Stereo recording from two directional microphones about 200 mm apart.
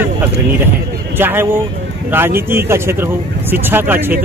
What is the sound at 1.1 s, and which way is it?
Speech, 10° right (ahead or behind).